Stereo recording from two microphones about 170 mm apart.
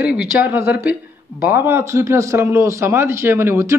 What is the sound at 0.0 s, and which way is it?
A man's voice, 5° right (ahead or behind).